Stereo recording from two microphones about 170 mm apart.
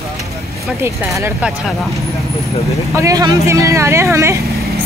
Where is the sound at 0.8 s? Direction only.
15° right (ahead or behind).